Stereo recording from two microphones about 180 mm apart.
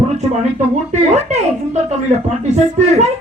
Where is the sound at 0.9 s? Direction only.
40° right (ahead or behind).